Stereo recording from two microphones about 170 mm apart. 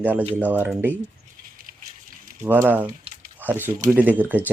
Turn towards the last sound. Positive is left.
turn(degrees=-10)  # may be behind; listen again after turning